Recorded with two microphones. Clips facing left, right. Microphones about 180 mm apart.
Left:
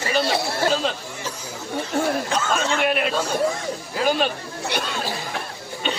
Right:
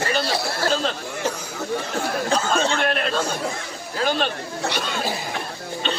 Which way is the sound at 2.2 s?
35° right (ahead or behind).